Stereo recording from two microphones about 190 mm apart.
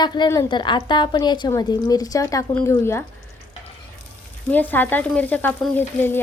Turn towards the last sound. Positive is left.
turn(degrees=10)  # may be behind; listen again after turning